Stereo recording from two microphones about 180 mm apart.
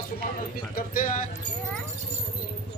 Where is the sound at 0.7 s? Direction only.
50° left (ahead or behind).